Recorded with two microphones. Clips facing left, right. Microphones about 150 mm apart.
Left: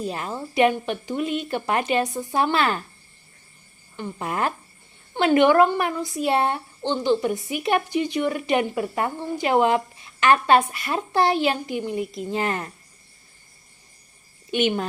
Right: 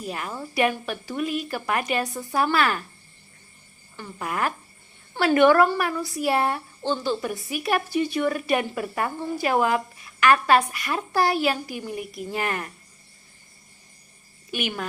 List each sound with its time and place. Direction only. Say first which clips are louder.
0.0 s speech: left 3 dB; 30° left (ahead or behind)
3.9 s speech: left 2 dB; 25° left (ahead or behind)
14.5 s speech: left 7 dB; 25° left (ahead or behind)